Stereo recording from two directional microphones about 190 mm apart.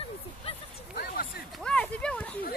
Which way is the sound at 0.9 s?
50° left (ahead or behind).